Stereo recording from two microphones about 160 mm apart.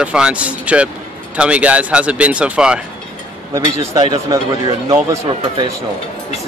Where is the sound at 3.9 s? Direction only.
25° right (ahead or behind).